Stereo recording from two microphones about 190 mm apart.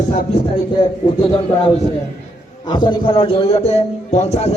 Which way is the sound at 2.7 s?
25° left (ahead or behind).